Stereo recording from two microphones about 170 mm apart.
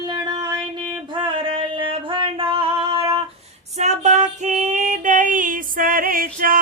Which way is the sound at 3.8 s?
40° right (ahead or behind).